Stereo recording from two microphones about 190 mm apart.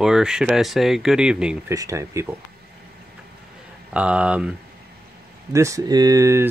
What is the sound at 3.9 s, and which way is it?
Speech, 5° right (ahead or behind).